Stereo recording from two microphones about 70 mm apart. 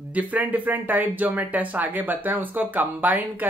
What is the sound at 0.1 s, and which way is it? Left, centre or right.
Speech, right.